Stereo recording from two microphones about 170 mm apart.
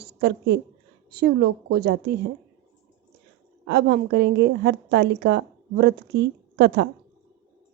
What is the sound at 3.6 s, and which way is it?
A woman's voice, 70° right (ahead or behind).